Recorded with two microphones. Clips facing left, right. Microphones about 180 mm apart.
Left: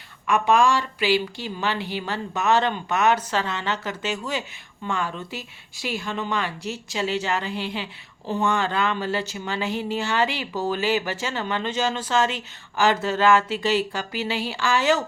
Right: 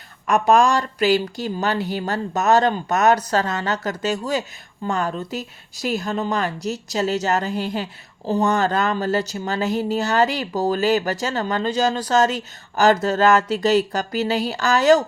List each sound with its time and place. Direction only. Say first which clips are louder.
0.3 s a woman's voice: right 3 dB; 40° right (ahead or behind)